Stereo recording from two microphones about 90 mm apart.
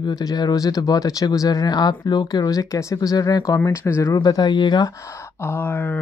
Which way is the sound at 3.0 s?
50° left (ahead or behind).